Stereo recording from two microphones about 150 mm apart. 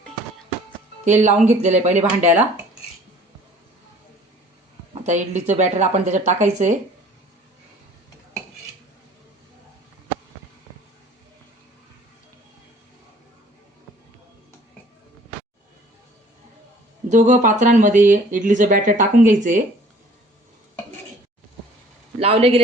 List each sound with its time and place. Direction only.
1.0 s speech: 50° right (ahead or behind)
2.2 s speech: 10° right (ahead or behind)
5.0 s speech: 50° right (ahead or behind)
17.1 s speech: 55° right (ahead or behind)
22.2 s speech: 40° right (ahead or behind)